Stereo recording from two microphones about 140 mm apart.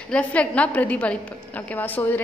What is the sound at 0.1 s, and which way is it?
A woman's voice, 10° left (ahead or behind).